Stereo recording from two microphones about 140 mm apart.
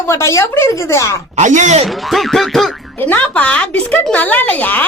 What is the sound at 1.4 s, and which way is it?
Speech, 60° right (ahead or behind).